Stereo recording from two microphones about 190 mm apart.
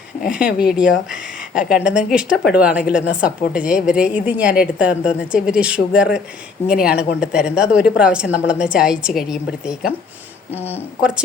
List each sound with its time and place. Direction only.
0.2 s a woman's voice: 5° right (ahead or behind)